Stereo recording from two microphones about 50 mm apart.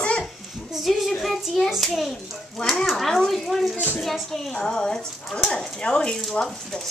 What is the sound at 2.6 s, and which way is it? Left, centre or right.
Speech, centre.